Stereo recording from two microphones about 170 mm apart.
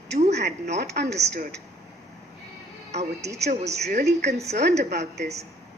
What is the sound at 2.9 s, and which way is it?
Speech, 40° right (ahead or behind).